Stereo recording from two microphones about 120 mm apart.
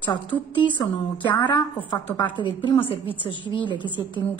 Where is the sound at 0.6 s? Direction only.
40° left (ahead or behind).